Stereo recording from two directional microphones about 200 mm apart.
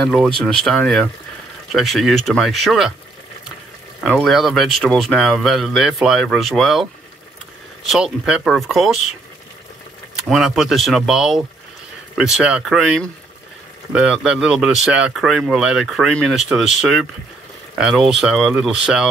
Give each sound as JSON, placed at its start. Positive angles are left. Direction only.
{"t": 0.0, "sound": "speech", "side_deg": 0}
{"t": 4.0, "sound": "speech", "side_deg": 0}
{"t": 7.9, "sound": "speech", "side_deg": -5}
{"t": 10.1, "sound": "speech", "side_deg": 0}